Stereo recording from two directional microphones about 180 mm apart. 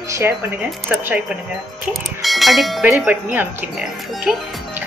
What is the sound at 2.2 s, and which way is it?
Speech, centre (ahead or behind).